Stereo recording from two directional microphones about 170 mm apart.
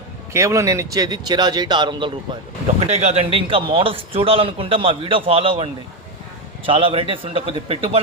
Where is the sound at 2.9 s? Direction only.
40° right (ahead or behind).